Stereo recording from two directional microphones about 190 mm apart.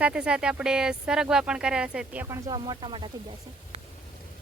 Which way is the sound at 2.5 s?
25° right (ahead or behind).